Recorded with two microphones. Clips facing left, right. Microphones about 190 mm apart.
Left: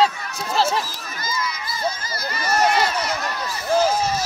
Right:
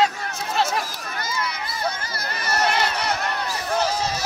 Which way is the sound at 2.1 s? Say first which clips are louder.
Left 3 dB; 60° right (ahead or behind).